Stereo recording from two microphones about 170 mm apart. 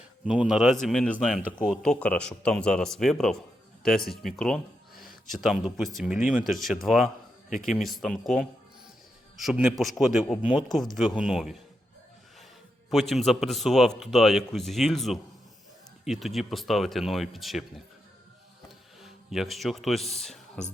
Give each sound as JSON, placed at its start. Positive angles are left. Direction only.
{"t": 0.3, "sound": "speech", "side_deg": -5}
{"t": 4.3, "sound": "a sound", "side_deg": 5}
{"t": 5.3, "sound": "speech", "side_deg": 0}
{"t": 7.5, "sound": "a man's voice", "side_deg": 50}
{"t": 7.8, "sound": "speech", "side_deg": 0}
{"t": 12.9, "sound": "speech", "side_deg": 0}
{"t": 19.0, "sound": "speech", "side_deg": 0}